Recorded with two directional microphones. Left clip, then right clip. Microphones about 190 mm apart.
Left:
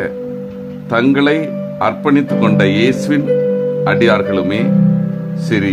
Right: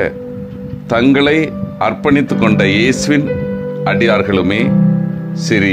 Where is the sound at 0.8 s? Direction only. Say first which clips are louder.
Right 1 dB; 20° right (ahead or behind).